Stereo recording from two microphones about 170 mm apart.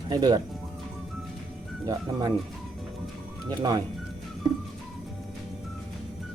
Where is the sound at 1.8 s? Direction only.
20° right (ahead or behind).